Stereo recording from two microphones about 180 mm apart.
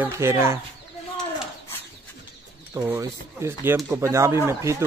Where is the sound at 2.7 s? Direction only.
15° right (ahead or behind).